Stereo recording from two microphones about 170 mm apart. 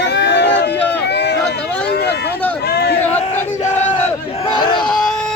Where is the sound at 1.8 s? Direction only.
75° left (ahead or behind).